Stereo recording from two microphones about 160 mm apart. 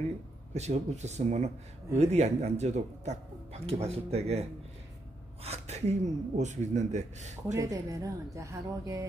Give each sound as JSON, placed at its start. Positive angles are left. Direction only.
{"t": 0.6, "sound": "speech", "side_deg": -45}
{"t": 7.5, "sound": "a woman's voice", "side_deg": -20}